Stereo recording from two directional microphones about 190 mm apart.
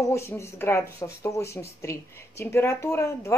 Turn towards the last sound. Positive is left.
turn(degrees=15)  # may be behind; listen again after turning